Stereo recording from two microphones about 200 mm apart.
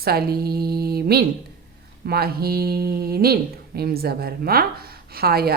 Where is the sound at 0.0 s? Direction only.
50° right (ahead or behind).